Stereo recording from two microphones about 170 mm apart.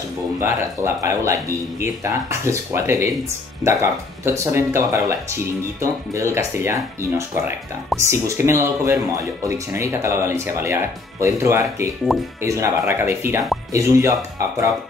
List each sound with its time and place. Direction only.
0.4 s speech: 15° right (ahead or behind)